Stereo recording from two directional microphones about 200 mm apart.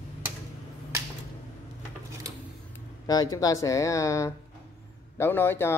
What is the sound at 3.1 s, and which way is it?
Speech, 20° left (ahead or behind).